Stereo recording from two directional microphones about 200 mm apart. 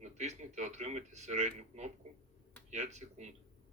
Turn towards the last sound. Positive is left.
turn(degrees=-35)  # may be behind; listen again after turning